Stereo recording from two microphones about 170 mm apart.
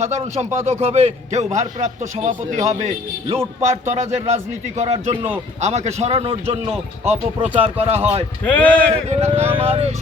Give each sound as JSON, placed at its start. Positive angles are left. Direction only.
{"t": 0.0, "sound": "a man's voice", "side_deg": -40}
{"t": 8.4, "sound": "a man's voice", "side_deg": 10}
{"t": 9.0, "sound": "a man's voice", "side_deg": -40}